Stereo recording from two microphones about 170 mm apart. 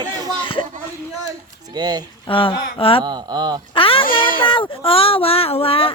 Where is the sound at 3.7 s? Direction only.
30° left (ahead or behind).